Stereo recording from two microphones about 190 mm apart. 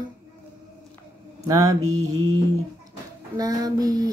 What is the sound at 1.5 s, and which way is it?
Mantra, 20° right (ahead or behind).